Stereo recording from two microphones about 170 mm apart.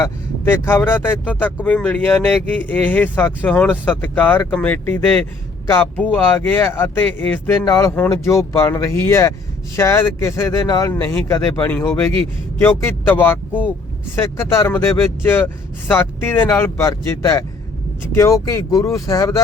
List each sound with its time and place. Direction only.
0.0 s speech: 15° left (ahead or behind)